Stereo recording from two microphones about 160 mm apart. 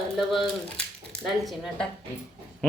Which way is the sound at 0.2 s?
Centre (ahead or behind).